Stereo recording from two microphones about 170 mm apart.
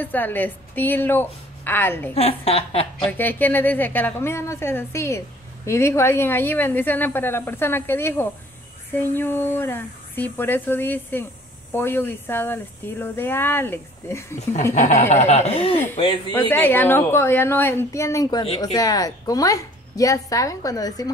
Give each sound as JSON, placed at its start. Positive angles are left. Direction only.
{"t": 0.0, "sound": "speech", "side_deg": 10}
{"t": 2.1, "sound": "a woman's voice", "side_deg": 35}
{"t": 3.1, "sound": "speech", "side_deg": 10}
{"t": 14.7, "sound": "a woman's voice", "side_deg": 40}
{"t": 15.7, "sound": "speech", "side_deg": 10}
{"t": 16.0, "sound": "a woman's voice", "side_deg": 30}
{"t": 16.3, "sound": "a woman's voice", "side_deg": 10}